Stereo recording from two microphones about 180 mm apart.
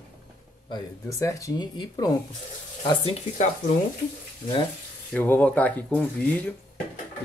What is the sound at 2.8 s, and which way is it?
Speech, 35° left (ahead or behind).